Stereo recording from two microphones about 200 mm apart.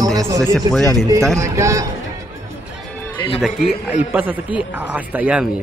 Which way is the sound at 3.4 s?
5° right (ahead or behind).